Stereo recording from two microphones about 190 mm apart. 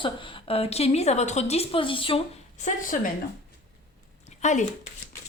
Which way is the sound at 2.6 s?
45° left (ahead or behind).